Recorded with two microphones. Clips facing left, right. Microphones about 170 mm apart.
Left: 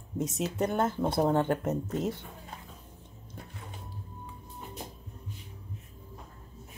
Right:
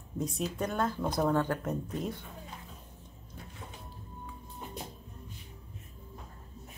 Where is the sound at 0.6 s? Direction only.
25° left (ahead or behind).